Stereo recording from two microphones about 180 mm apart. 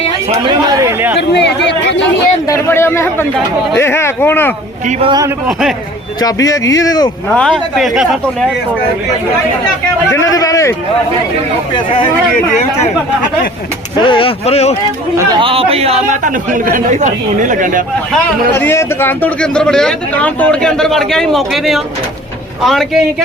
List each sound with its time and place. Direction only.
0.7 s speech: 15° right (ahead or behind)
1.3 s a sound: 70° left (ahead or behind)
2.5 s speech: 15° left (ahead or behind)
4.9 s a man's voice: 30° right (ahead or behind)
5.5 s a man's voice: centre (ahead or behind)
6.1 s speech: 20° left (ahead or behind)
7.3 s a man's voice: 5° left (ahead or behind)
10.1 s speech: 15° left (ahead or behind)
14.0 s speech: 30° left (ahead or behind)
15.4 s a man's voice: 30° right (ahead or behind); by 17.8 s 45° right (ahead or behind)
18.5 s a man's voice: 15° left (ahead or behind)